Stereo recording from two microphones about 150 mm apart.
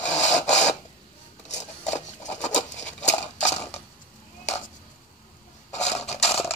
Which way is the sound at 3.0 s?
50° left (ahead or behind).